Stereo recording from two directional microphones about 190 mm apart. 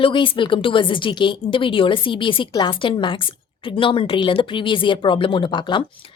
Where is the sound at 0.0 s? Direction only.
25° left (ahead or behind).